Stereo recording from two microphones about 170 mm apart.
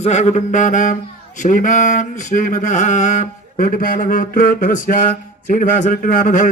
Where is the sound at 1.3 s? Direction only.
50° left (ahead or behind).